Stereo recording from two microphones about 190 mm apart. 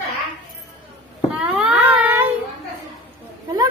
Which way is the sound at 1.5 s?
5° right (ahead or behind).